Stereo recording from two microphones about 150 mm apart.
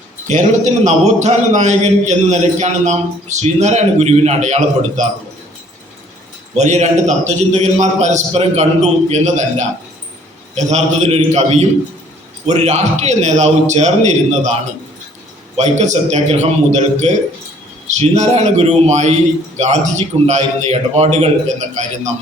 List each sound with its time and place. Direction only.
0.3 s a man's voice: 55° right (ahead or behind)
6.6 s a man's voice: 50° right (ahead or behind)
15.5 s a man's voice: 50° right (ahead or behind)